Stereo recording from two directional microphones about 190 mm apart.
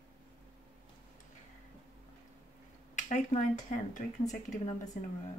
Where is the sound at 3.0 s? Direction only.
40° left (ahead or behind).